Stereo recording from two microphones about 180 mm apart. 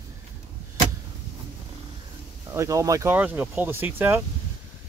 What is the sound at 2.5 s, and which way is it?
Speech, 15° right (ahead or behind).